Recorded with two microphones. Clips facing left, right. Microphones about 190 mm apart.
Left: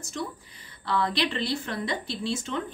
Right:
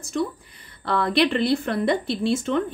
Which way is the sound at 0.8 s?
55° right (ahead or behind).